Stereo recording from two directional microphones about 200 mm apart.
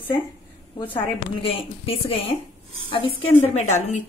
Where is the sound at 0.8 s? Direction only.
25° left (ahead or behind).